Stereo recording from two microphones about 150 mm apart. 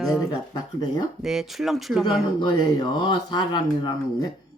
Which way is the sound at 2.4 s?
30° left (ahead or behind).